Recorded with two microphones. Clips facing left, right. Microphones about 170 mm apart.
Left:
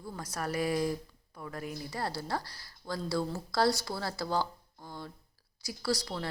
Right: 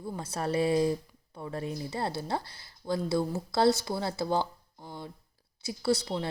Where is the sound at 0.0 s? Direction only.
25° right (ahead or behind).